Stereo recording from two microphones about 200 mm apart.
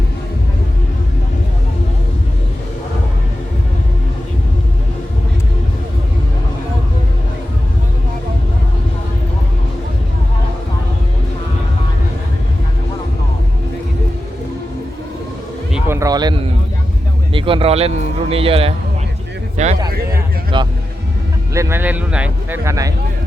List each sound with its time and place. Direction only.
15.7 s a sound: 15° right (ahead or behind)
17.3 s a man's voice: 25° right (ahead or behind)
20.5 s a man's voice: 25° right (ahead or behind)
21.5 s speech: 15° right (ahead or behind)